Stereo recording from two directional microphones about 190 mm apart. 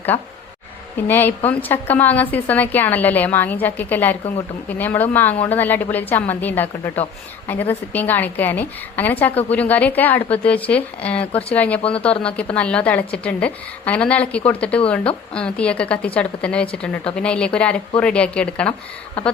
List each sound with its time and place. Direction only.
0.9 s a woman's voice: 10° left (ahead or behind)
11.8 s speech: 30° left (ahead or behind)
12.2 s a woman's voice: 5° left (ahead or behind)